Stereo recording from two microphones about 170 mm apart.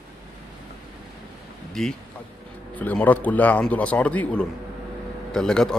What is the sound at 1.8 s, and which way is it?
A man's voice, 5° left (ahead or behind).